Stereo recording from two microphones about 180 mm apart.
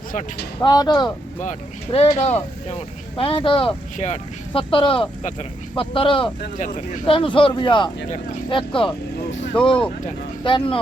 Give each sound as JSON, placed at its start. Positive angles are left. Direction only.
{"t": 0.6, "sound": "speech", "side_deg": 20}
{"t": 1.4, "sound": "speech", "side_deg": 40}